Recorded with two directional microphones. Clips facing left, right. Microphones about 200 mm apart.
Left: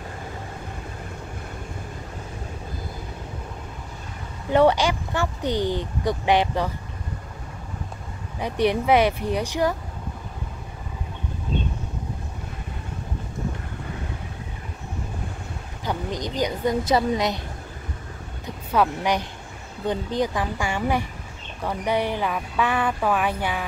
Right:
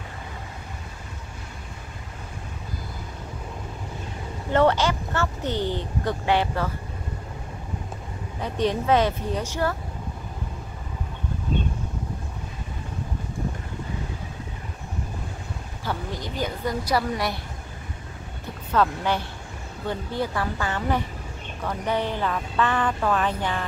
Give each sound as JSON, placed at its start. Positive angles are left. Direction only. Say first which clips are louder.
{"t": 4.5, "sound": "speech", "louder": "left 2 dB", "side_deg": 15}
{"t": 8.4, "sound": "speech", "louder": "left 3 dB", "side_deg": 15}
{"t": 15.8, "sound": "a woman's voice", "louder": "left 3 dB", "side_deg": 15}
{"t": 18.7, "sound": "speech", "louder": "left 1 dB", "side_deg": 15}